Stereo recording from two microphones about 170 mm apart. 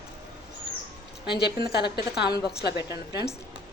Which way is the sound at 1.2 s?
70° left (ahead or behind).